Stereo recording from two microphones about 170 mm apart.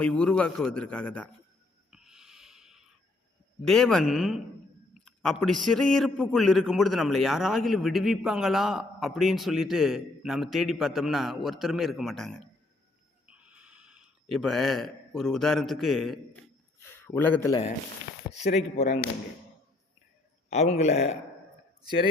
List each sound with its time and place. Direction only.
0.0 s a man's voice: 5° left (ahead or behind)
1.9 s a sound: 5° right (ahead or behind)
3.6 s a man's voice: 5° left (ahead or behind)
13.2 s a sound: 5° right (ahead or behind)
16.9 s a man's voice: 15° left (ahead or behind)
18.3 s a man's voice: 40° left (ahead or behind)
18.9 s speech: 65° left (ahead or behind)
20.5 s a man's voice: 40° left (ahead or behind)